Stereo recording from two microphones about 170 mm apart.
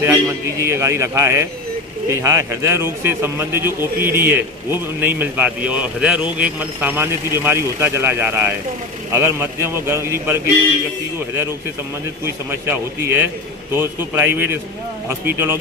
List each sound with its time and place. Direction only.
0.0 s speech: 15° right (ahead or behind)
12.3 s speech: 15° right (ahead or behind)